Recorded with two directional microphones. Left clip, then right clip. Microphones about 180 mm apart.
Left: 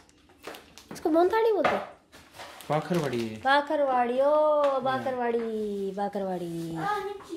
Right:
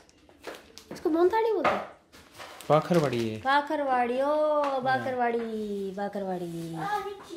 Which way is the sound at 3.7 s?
10° left (ahead or behind).